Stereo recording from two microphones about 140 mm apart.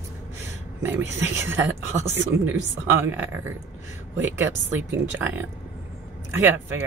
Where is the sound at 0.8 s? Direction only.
15° right (ahead or behind).